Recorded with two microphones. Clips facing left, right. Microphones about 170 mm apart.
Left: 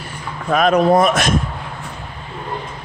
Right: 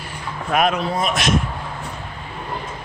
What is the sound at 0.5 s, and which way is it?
Speech, 40° left (ahead or behind).